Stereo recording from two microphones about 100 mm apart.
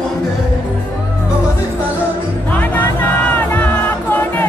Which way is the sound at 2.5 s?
20° left (ahead or behind).